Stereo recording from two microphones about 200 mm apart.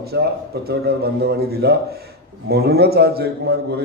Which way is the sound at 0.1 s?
60° right (ahead or behind).